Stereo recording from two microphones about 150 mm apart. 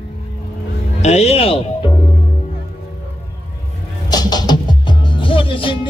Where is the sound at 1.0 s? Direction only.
45° left (ahead or behind).